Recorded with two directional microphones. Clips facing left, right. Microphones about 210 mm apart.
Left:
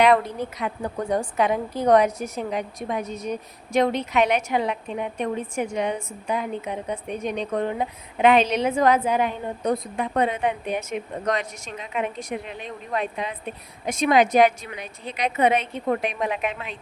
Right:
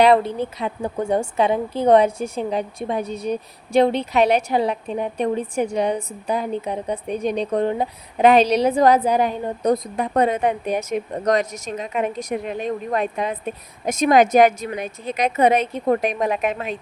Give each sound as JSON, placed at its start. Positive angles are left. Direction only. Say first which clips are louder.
{"t": 0.0, "sound": "a woman's voice", "louder": "right 3 dB", "side_deg": -30}